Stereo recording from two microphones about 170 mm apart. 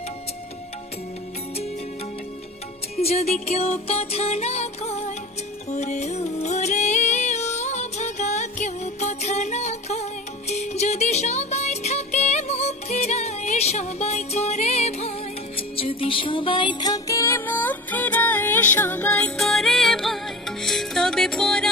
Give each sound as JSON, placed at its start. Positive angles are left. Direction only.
{"t": 3.0, "sound": "music", "side_deg": 40}